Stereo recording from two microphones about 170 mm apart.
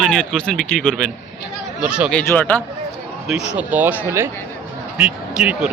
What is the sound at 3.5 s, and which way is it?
Speech, 10° right (ahead or behind).